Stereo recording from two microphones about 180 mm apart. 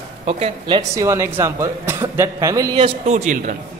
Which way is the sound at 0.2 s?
30° right (ahead or behind).